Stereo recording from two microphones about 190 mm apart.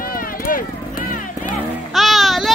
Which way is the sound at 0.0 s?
50° left (ahead or behind).